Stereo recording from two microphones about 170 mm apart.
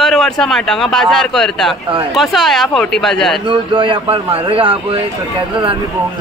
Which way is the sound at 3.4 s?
30° right (ahead or behind).